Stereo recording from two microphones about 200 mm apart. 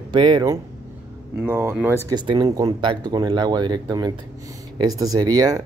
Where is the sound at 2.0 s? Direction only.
20° right (ahead or behind).